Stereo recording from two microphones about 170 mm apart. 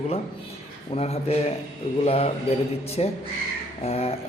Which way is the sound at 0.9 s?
35° left (ahead or behind).